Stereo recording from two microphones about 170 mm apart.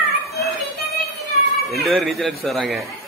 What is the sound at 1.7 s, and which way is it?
A man's voice, centre (ahead or behind).